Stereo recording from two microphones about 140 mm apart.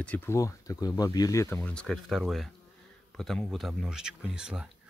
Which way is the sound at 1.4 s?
10° left (ahead or behind).